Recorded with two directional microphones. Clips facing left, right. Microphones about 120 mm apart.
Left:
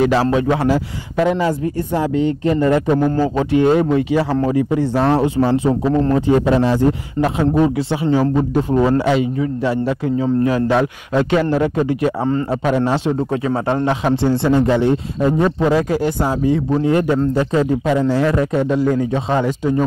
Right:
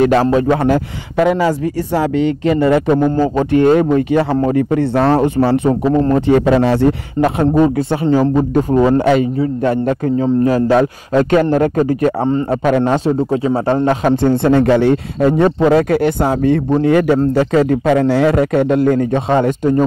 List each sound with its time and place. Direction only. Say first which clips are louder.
0.0 s speech: right 3 dB; 55° right (ahead or behind)
0.3 s a man's voice: right 3 dB; 40° right (ahead or behind)
1.1 s a man's voice: right 3 dB; 75° right (ahead or behind)
3.3 s speech: right 3 dB; 50° right (ahead or behind)
5.9 s a man's voice: right 3 dB; 35° right (ahead or behind)
6.1 s speech: right 3 dB; 65° right (ahead or behind)
7.5 s a man's voice: right 3 dB; 45° right (ahead or behind)
12.2 s a man's voice: right 3 dB; 25° right (ahead or behind)
12.6 s a man's voice: right 4 dB; 55° right (ahead or behind)